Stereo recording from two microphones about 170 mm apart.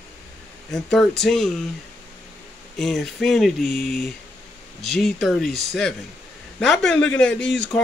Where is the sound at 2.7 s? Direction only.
Centre (ahead or behind).